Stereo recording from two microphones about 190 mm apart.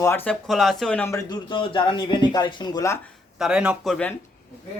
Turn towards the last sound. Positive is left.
turn(degrees=5)  # may be behind; listen again after turning